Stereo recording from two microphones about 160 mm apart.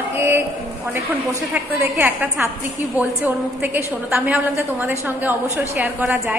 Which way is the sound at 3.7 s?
10° right (ahead or behind).